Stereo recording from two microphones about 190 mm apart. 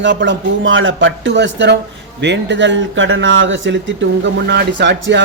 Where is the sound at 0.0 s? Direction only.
70° right (ahead or behind).